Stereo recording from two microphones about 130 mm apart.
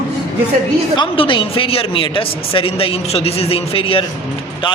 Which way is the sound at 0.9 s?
40° left (ahead or behind).